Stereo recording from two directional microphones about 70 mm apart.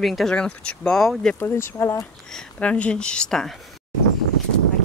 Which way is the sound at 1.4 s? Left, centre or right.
Left.